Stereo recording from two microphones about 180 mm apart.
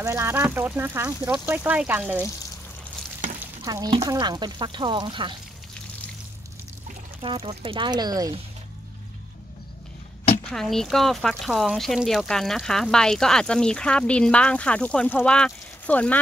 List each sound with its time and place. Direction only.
0.0 s speech: 15° right (ahead or behind)
3.6 s speech: 20° right (ahead or behind)
7.2 s speech: 30° right (ahead or behind)
10.5 s speech: centre (ahead or behind)